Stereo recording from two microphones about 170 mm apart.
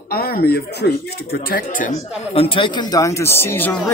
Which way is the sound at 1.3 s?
55° left (ahead or behind).